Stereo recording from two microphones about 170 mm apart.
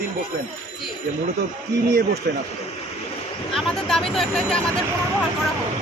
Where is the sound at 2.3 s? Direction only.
80° right.